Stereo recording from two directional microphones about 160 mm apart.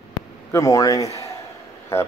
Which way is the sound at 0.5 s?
20° left (ahead or behind).